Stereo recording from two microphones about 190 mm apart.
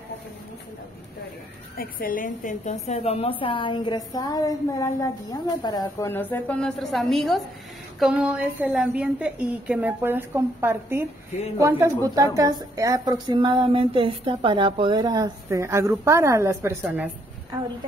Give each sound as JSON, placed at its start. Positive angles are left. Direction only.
{"t": 1.8, "sound": "a woman's voice", "side_deg": 50}